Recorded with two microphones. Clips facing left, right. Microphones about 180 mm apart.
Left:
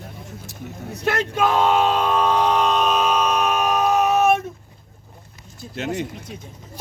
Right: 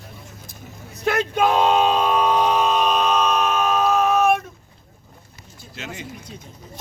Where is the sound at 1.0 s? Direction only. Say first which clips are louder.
Right 1 dB; 15° right (ahead or behind); by 4.3 s 20° left (ahead or behind).